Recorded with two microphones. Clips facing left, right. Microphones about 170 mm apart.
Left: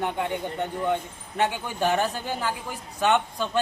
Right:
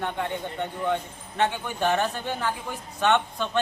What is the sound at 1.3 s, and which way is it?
Speech, 10° left (ahead or behind).